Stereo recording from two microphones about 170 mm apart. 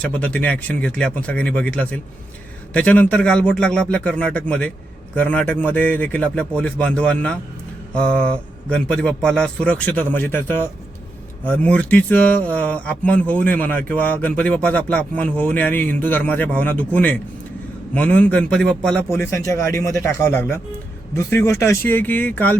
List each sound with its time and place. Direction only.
0.0 s speech: 10° left (ahead or behind)
19.0 s speech: 15° left (ahead or behind)